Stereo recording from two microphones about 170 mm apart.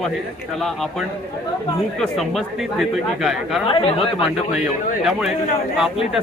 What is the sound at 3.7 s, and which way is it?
Speech, 30° left (ahead or behind).